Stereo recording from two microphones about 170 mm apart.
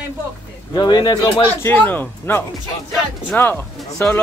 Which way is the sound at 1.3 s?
15° left (ahead or behind).